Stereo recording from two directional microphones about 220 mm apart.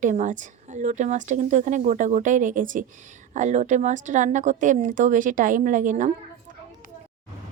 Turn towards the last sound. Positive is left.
turn(degrees=-35)  # may be behind; listen again after turning